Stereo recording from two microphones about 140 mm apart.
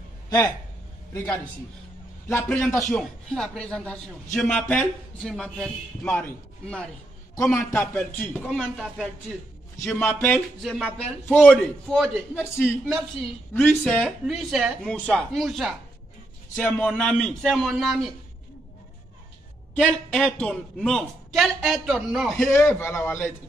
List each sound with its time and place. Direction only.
2.2 s speech: 15° left (ahead or behind)
2.9 s a man's voice: 5° left (ahead or behind)
9.9 s speech: 15° left (ahead or behind)
10.6 s a man's voice: 5° right (ahead or behind)
11.2 s a man's voice: 10° left (ahead or behind)
13.5 s a man's voice: 10° left (ahead or behind)
16.5 s a man's voice: 10° left (ahead or behind)
19.7 s a man's voice: 10° left (ahead or behind)
22.5 s speech: 15° left (ahead or behind)